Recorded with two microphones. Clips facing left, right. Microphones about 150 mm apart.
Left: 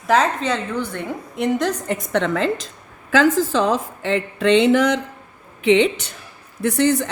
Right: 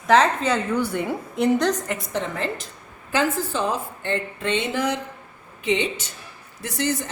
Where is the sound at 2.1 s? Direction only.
85° left.